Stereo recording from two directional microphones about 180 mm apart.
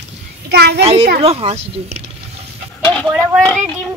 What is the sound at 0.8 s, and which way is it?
Speech, 35° right (ahead or behind).